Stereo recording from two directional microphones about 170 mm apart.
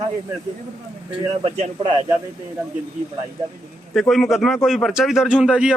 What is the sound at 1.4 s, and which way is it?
Speech, 35° right (ahead or behind).